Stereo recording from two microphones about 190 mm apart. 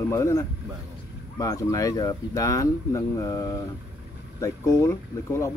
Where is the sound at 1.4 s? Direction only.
20° left (ahead or behind).